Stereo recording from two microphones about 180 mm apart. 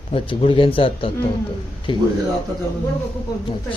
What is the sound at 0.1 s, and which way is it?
Speech, 30° left (ahead or behind).